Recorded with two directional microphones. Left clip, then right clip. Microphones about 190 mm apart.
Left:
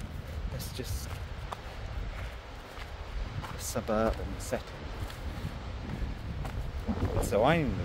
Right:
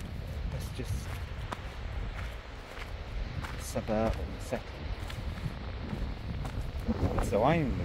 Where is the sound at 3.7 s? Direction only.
15° left (ahead or behind).